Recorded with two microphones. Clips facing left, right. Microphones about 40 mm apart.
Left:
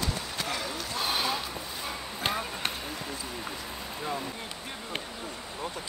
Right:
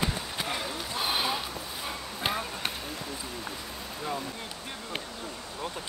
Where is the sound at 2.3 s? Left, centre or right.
Centre.